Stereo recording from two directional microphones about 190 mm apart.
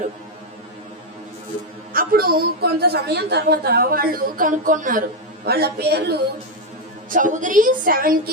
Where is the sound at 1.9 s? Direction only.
50° right (ahead or behind).